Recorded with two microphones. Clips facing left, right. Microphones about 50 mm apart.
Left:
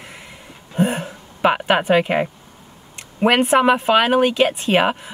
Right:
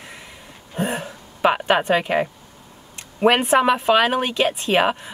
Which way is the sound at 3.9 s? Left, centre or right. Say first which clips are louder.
Left 3 dB; centre.